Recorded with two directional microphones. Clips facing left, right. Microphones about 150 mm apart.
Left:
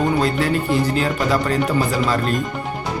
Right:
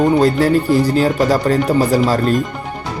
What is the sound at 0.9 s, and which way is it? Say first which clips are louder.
Speech: right 5 dB; 35° right (ahead or behind).